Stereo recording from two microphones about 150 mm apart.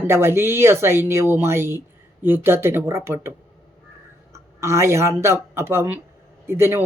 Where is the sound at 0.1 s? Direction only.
15° right (ahead or behind).